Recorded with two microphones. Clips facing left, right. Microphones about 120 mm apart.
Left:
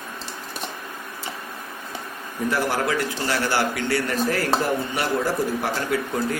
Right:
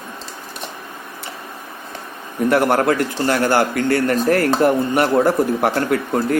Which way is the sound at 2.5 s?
60° right (ahead or behind).